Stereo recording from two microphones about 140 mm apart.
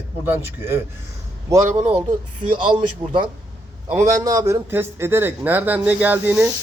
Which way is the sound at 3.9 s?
20° right (ahead or behind).